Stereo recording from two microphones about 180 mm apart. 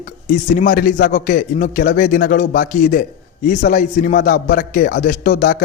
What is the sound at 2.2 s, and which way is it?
A man's voice, 55° left (ahead or behind).